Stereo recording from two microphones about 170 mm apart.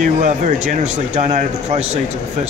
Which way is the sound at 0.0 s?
45° right (ahead or behind).